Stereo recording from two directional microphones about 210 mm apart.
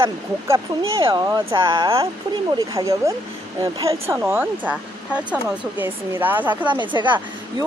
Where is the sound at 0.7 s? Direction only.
15° right (ahead or behind).